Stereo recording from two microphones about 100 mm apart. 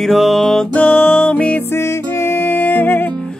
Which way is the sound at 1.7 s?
25° left (ahead or behind).